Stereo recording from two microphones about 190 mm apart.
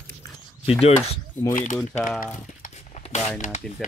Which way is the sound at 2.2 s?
40° left (ahead or behind).